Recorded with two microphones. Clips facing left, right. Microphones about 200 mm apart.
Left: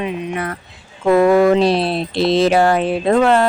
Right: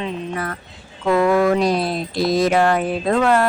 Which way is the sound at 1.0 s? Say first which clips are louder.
Left 4 dB; 25° left (ahead or behind).